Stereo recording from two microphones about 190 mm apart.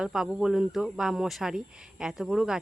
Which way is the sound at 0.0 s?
5° right (ahead or behind).